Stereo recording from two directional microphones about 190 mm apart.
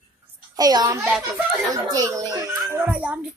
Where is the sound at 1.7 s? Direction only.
20° right (ahead or behind).